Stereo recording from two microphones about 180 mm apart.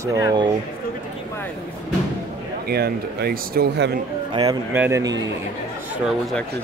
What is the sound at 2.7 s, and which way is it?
Speech, 60° right (ahead or behind).